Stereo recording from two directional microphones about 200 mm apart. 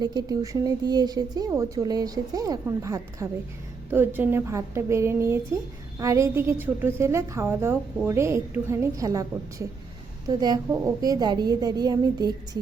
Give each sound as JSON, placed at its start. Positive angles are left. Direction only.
{"t": 0.0, "sound": "a woman's voice", "side_deg": -20}